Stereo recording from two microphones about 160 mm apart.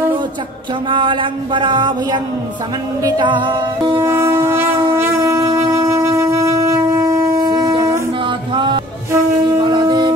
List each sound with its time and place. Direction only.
0.8 s a sound: 30° right (ahead or behind)
3.0 s music: 25° right (ahead or behind)
4.0 s shofar: 15° right (ahead or behind)
8.5 s music: 30° right (ahead or behind)
9.1 s wind instrument: 30° right (ahead or behind)